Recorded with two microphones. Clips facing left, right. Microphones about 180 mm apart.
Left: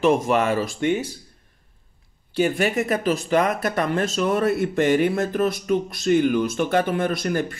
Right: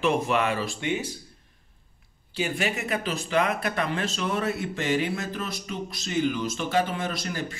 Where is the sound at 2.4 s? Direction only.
50° left (ahead or behind).